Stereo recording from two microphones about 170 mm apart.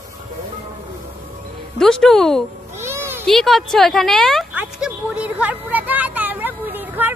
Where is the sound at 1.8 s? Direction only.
5° left (ahead or behind).